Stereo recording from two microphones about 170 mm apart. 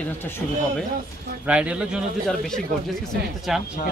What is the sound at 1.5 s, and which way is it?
A man's voice, 5° right (ahead or behind).